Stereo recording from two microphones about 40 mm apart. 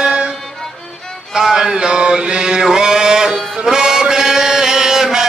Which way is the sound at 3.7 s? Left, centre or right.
Centre.